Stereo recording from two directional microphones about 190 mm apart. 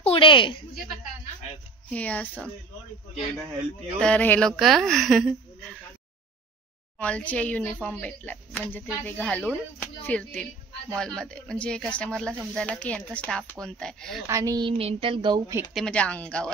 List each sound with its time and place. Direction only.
0.0 s a woman's voice: 30° left (ahead or behind)
1.9 s a woman's voice: 5° left (ahead or behind)
4.0 s a woman's voice: 10° left (ahead or behind)
7.0 s a woman's voice: 5° left (ahead or behind)
14.2 s a woman's voice: 15° right (ahead or behind)
15.7 s a woman's voice: 5° left (ahead or behind)